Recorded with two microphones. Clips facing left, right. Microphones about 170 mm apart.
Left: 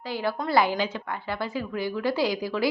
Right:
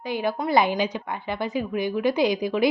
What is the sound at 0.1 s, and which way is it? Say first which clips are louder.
A woman's voice: right 3 dB; 20° right (ahead or behind).